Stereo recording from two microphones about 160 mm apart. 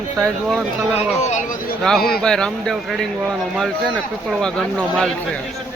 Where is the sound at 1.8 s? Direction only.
5° left (ahead or behind).